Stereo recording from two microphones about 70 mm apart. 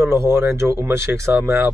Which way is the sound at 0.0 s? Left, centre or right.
Right.